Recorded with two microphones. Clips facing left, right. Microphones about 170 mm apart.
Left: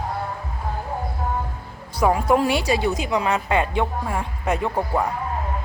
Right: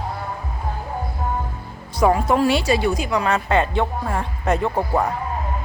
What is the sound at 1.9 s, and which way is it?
A woman's voice, 10° left (ahead or behind).